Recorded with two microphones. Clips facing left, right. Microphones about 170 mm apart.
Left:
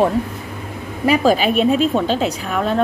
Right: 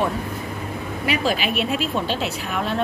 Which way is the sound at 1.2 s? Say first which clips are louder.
Left 8 dB; 45° left (ahead or behind).